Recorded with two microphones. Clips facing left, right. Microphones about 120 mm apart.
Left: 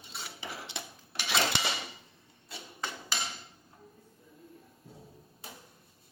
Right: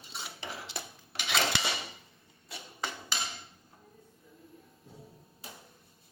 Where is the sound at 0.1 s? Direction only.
Centre (ahead or behind).